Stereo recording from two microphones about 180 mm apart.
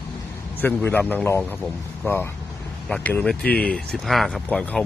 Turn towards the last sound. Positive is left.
turn(degrees=5)  # may be behind; listen again after turning